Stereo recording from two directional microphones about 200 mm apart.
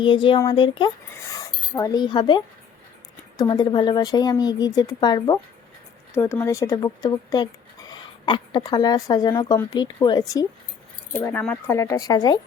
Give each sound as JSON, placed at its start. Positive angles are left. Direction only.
{"t": 0.0, "sound": "speech", "side_deg": 25}
{"t": 11.1, "sound": "speech", "side_deg": 10}